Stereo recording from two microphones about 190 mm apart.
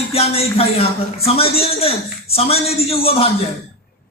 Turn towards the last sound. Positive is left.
turn(degrees=30)  # may be behind; listen again after turning